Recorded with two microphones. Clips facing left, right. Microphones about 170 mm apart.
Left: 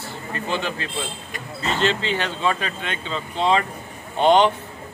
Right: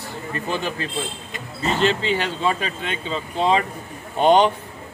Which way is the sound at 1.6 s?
10° right (ahead or behind).